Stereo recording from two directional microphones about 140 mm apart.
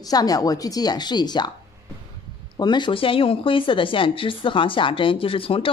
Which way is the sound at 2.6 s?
30° left (ahead or behind).